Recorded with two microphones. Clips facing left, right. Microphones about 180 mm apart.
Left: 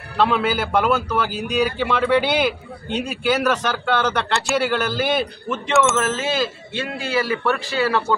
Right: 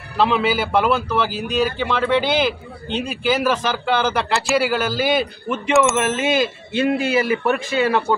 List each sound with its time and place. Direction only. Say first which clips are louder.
0.2 s a man's voice: right 1 dB; centre (ahead or behind)
5.9 s speech: right 3 dB; 15° right (ahead or behind)